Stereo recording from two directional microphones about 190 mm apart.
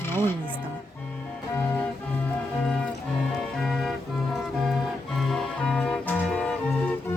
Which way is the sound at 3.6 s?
Centre (ahead or behind).